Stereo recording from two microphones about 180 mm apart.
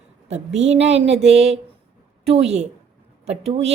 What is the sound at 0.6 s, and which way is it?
Speech, 35° right (ahead or behind).